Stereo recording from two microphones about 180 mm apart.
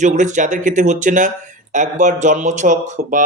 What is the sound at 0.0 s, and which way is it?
A man's voice, 45° right (ahead or behind).